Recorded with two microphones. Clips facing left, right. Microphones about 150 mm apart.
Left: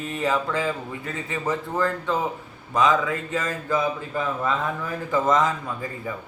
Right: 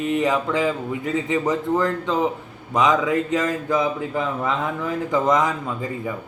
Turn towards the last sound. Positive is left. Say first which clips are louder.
# right 4 dB
turn(degrees=-15)  # may be behind; listen again after turning